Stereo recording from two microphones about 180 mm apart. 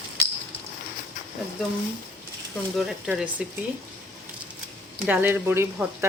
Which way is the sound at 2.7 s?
Centre (ahead or behind).